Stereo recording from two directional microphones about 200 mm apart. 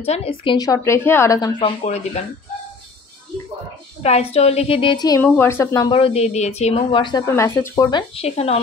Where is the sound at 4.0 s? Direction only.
30° left (ahead or behind).